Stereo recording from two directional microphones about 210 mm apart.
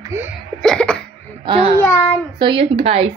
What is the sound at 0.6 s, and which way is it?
Cough, 5° left (ahead or behind).